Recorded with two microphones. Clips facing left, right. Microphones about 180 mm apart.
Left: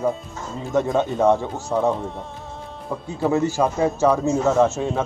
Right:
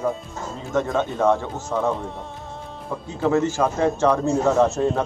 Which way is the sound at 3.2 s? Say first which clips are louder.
Even; 15° left (ahead or behind).